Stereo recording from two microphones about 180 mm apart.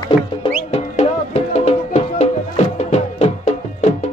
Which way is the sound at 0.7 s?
35° left (ahead or behind).